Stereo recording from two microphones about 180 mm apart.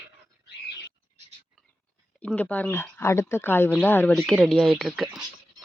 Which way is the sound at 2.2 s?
10° left (ahead or behind).